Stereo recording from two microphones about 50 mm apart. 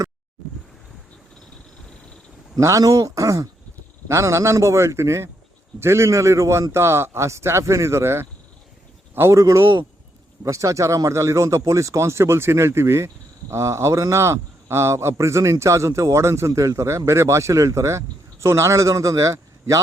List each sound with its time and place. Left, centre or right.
2.6 s a man's voice: right
9.3 s a man's voice: right